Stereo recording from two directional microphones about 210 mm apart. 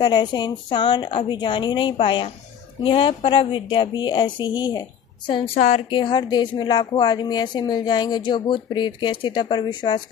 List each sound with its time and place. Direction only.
0.0 s a woman's voice: 20° left (ahead or behind)